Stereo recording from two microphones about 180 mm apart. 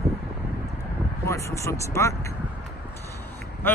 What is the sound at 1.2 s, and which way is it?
A man's voice, 15° left (ahead or behind).